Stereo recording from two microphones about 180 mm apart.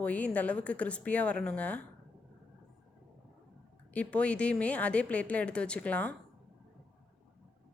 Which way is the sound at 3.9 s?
5° left (ahead or behind).